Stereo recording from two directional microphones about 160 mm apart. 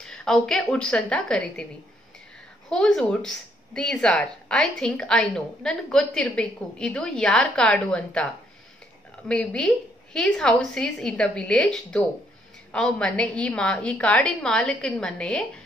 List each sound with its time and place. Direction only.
0.0 s a woman's voice: 5° left (ahead or behind)
2.7 s a woman's voice: 5° left (ahead or behind)
9.3 s a woman's voice: 5° left (ahead or behind)